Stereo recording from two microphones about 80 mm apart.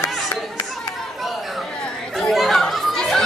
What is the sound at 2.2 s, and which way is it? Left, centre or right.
Chatter, centre.